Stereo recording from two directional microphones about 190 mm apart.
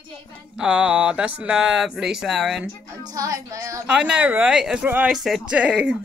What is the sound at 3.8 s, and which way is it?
Speech, 5° right (ahead or behind).